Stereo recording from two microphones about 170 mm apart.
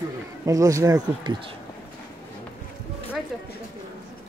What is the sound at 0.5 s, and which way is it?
Speech, 20° right (ahead or behind).